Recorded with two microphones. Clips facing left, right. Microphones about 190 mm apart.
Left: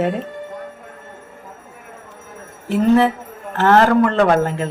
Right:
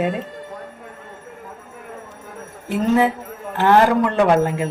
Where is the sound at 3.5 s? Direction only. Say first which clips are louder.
Left 2 dB; 15° right (ahead or behind).